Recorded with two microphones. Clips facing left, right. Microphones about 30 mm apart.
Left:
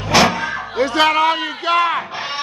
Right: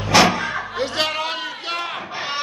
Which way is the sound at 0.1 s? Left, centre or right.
Centre.